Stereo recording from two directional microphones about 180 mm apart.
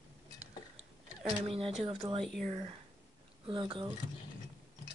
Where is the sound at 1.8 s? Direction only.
30° right (ahead or behind).